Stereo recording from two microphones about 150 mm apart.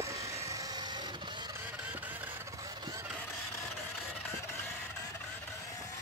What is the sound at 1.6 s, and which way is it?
Vehicle, 10° right (ahead or behind).